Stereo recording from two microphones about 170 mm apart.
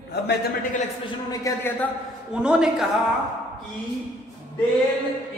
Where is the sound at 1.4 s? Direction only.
15° left (ahead or behind).